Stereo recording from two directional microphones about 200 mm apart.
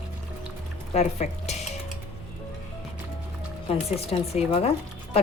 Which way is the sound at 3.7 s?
30° left (ahead or behind).